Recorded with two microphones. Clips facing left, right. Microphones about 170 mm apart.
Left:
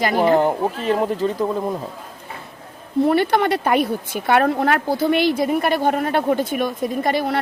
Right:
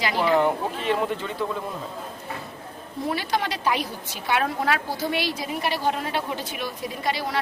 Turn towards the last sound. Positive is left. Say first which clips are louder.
# left 7 dB
turn(degrees=55)  # may be behind; listen again after turning